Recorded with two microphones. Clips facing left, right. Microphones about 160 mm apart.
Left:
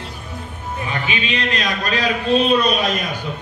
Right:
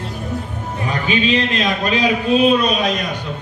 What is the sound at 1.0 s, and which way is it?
A man's voice, 35° right (ahead or behind).